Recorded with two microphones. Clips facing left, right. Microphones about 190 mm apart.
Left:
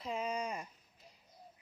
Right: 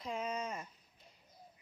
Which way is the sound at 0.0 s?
5° left (ahead or behind).